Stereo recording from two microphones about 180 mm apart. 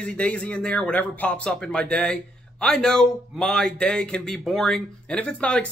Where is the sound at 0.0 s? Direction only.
5° left (ahead or behind).